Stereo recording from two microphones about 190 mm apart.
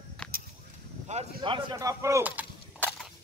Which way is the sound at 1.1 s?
40° right (ahead or behind).